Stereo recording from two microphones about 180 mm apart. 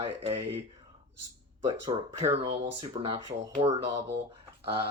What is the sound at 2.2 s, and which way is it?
Speech, 35° right (ahead or behind).